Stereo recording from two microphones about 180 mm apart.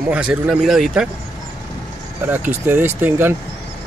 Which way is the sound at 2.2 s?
10° right (ahead or behind).